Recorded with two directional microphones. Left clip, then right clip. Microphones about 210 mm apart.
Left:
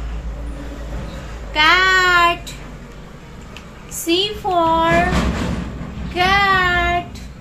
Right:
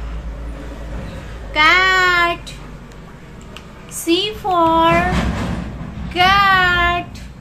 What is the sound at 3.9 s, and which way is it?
Child singing, 10° right (ahead or behind).